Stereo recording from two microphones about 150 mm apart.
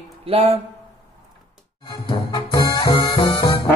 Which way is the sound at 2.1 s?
35° left (ahead or behind).